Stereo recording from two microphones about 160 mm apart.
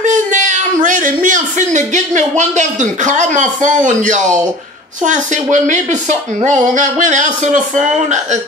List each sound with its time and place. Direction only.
0.0 s speech: 50° right (ahead or behind)